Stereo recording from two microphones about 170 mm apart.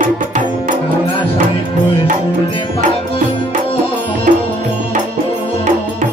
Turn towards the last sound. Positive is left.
turn(degrees=-45)  # may be behind; listen again after turning